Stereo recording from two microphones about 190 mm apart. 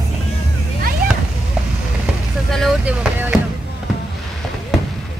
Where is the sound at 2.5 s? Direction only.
Centre (ahead or behind).